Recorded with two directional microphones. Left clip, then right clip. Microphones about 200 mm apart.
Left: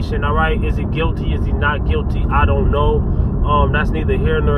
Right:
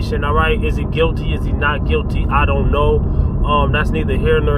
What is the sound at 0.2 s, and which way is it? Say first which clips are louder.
Speech: right 1 dB; 25° right (ahead or behind).